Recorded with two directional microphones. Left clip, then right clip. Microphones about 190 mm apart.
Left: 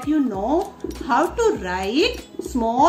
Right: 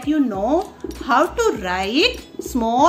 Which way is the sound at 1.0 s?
15° right (ahead or behind).